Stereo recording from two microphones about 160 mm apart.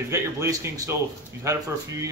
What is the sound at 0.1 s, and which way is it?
A man's voice, 20° right (ahead or behind).